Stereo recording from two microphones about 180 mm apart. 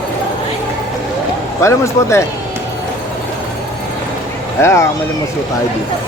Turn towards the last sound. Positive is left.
turn(degrees=15)  # may be behind; listen again after turning